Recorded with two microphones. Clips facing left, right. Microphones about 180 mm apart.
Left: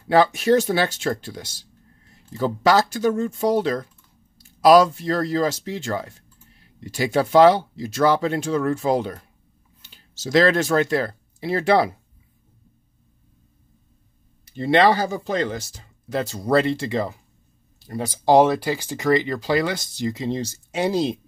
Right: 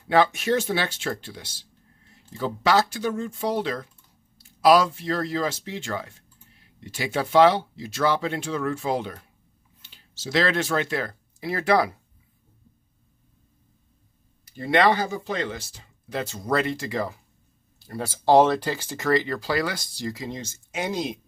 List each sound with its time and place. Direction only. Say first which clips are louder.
0.1 s speech: left 4 dB; 35° left (ahead or behind)
14.4 s speech: left 3 dB; 25° left (ahead or behind)